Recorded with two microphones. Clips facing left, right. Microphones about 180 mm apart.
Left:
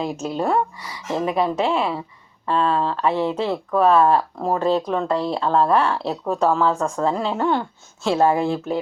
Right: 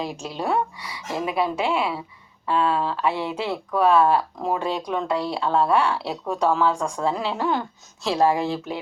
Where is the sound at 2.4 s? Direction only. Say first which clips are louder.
Left 2 dB; 5° right (ahead or behind).